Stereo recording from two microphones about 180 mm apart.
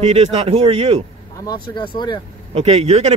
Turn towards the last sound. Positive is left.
turn(degrees=-35)  # may be behind; listen again after turning